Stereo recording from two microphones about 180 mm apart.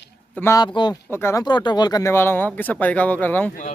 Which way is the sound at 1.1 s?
15° left (ahead or behind).